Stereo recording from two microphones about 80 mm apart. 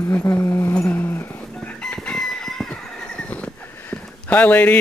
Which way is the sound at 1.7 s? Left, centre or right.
Centre.